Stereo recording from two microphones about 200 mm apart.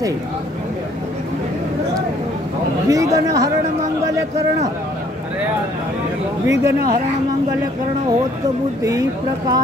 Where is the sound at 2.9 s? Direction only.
15° right (ahead or behind).